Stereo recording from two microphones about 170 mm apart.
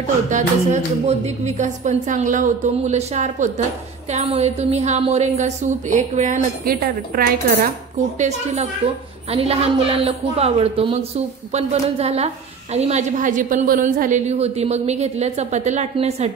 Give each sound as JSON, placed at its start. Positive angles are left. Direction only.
{"t": 0.3, "sound": "a woman's voice", "side_deg": -45}
{"t": 8.8, "sound": "a woman's voice", "side_deg": -35}